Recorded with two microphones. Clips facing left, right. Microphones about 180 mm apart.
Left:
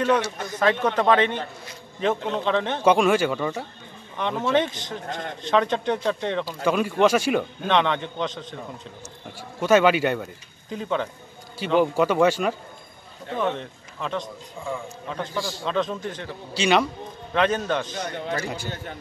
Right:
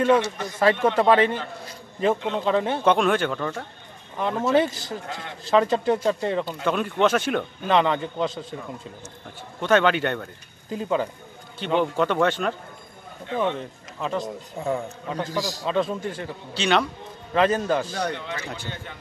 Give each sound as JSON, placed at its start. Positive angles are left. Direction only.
{"t": 0.0, "sound": "a man's voice", "side_deg": -5}
{"t": 4.2, "sound": "speech", "side_deg": -5}
{"t": 5.0, "sound": "a man's voice", "side_deg": 45}
{"t": 5.4, "sound": "speech", "side_deg": -5}
{"t": 9.6, "sound": "speech", "side_deg": 5}
{"t": 14.2, "sound": "a man's voice", "side_deg": -40}
{"t": 15.6, "sound": "a man's voice", "side_deg": -5}
{"t": 16.5, "sound": "speech", "side_deg": 5}
{"t": 18.2, "sound": "a man's voice", "side_deg": 40}